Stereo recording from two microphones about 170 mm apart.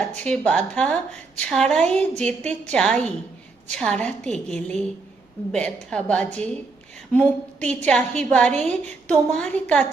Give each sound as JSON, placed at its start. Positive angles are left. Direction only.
{"t": 0.2, "sound": "a woman's voice", "side_deg": 5}